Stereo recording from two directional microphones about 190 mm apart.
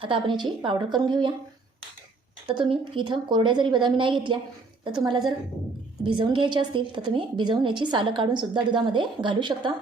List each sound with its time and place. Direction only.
0.0 s a woman's voice: 25° right (ahead or behind)
2.5 s a woman's voice: 25° right (ahead or behind)